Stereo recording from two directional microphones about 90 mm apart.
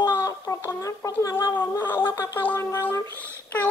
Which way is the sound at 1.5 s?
25° left (ahead or behind).